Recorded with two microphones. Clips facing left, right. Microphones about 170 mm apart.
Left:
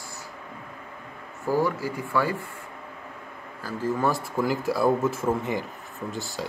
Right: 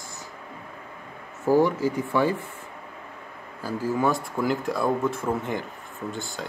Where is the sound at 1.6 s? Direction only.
20° right (ahead or behind).